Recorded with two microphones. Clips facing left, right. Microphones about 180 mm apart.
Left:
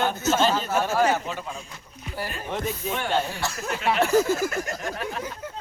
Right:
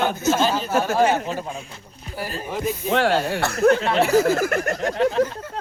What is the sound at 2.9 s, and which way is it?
Speech, 90° right.